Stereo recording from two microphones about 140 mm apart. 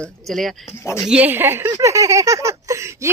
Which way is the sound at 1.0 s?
10° right (ahead or behind).